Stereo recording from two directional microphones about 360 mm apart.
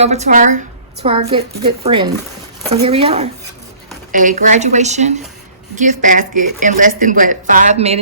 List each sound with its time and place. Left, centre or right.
0.0 s a woman's voice: centre